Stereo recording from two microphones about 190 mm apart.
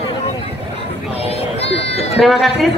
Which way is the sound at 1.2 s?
35° left (ahead or behind).